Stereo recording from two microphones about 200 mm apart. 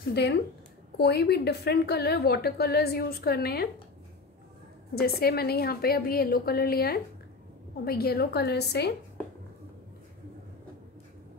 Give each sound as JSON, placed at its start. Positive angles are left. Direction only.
{"t": 0.1, "sound": "a woman's voice", "side_deg": 60}
{"t": 4.9, "sound": "a woman's voice", "side_deg": 50}